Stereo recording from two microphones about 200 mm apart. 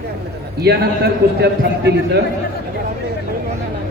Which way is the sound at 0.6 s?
55° right (ahead or behind).